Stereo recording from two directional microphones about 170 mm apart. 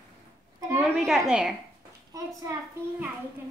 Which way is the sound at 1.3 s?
5° right (ahead or behind).